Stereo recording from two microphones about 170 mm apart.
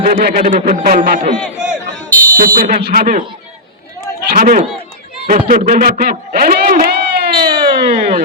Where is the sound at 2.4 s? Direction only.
55° right (ahead or behind).